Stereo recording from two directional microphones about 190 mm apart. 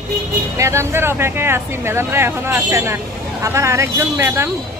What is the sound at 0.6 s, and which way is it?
Speech, 15° right (ahead or behind).